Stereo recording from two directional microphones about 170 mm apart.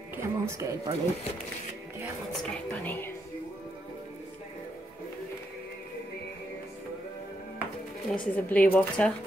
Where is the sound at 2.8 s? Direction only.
10° left (ahead or behind).